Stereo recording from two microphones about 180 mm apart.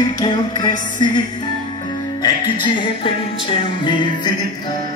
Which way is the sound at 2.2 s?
25° left (ahead or behind).